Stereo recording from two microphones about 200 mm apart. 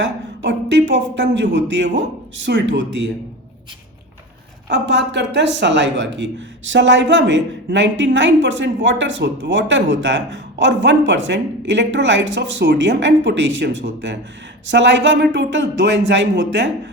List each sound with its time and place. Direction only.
0.0 s a man's voice: 60° right (ahead or behind)
4.7 s a man's voice: 60° right (ahead or behind)